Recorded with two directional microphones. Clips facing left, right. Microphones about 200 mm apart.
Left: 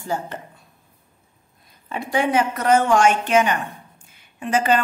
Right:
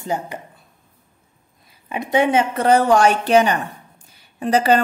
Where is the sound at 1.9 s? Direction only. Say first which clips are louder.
Right 3 dB; 20° right (ahead or behind).